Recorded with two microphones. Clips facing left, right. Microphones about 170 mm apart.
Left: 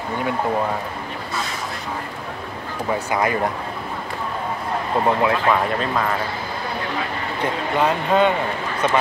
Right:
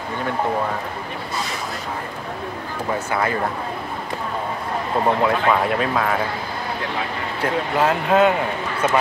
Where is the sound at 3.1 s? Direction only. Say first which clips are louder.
Left 2 dB; 15° left (ahead or behind).